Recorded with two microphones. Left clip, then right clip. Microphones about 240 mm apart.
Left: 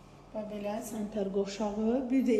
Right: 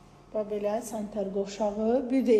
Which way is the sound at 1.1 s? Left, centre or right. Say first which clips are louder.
Even; centre.